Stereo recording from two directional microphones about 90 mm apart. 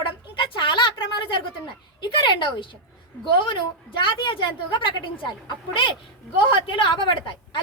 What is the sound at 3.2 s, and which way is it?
A woman's voice, 65° left (ahead or behind).